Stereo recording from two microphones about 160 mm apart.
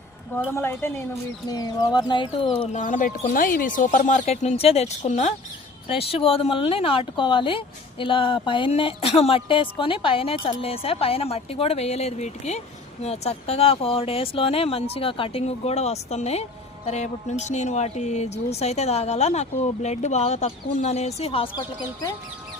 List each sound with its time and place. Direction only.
0.5 s a woman's voice: 15° left (ahead or behind); by 2.6 s 35° left (ahead or behind)
2.7 s speech: 50° left (ahead or behind); by 21.6 s 35° left (ahead or behind)